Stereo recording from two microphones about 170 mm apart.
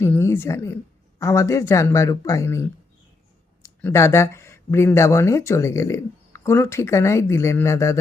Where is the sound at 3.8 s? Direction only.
15° left (ahead or behind).